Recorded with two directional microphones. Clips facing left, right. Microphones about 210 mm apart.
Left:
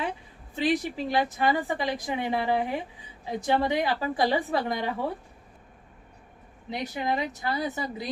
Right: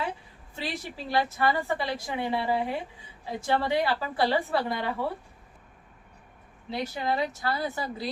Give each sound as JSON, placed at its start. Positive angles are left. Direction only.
{"t": 0.5, "sound": "a woman's voice", "side_deg": 15}
{"t": 6.7, "sound": "a woman's voice", "side_deg": 15}